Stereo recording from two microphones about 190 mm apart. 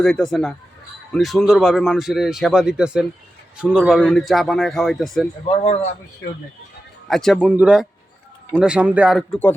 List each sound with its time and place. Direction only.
0.0 s speech: centre (ahead or behind)
5.5 s speech: 35° left (ahead or behind)
7.1 s speech: centre (ahead or behind)